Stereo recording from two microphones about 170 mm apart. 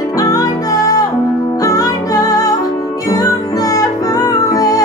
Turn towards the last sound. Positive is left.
turn(degrees=20)  # may be behind; listen again after turning